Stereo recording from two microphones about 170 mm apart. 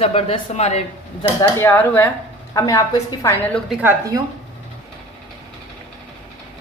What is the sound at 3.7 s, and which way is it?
Speech, 10° right (ahead or behind).